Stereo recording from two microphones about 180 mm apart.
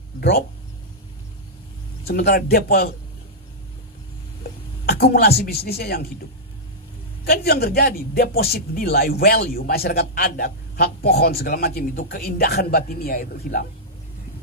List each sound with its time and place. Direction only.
2.0 s a man's voice: 65° left (ahead or behind)
4.4 s a sound: 60° left (ahead or behind)
5.7 s a man's voice: 60° left (ahead or behind)
7.2 s a man's voice: 60° left (ahead or behind)